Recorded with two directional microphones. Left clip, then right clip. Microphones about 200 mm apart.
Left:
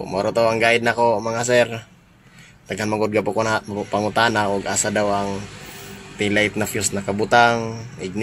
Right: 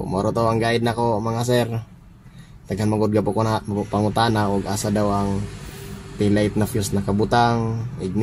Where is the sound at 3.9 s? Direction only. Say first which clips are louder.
Left 2 dB; 20° right (ahead or behind).